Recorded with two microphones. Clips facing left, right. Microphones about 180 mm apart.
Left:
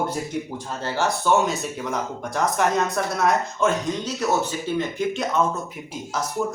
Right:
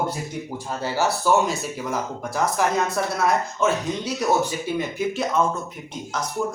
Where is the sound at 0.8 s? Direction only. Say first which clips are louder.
Right 1 dB; 5° right (ahead or behind).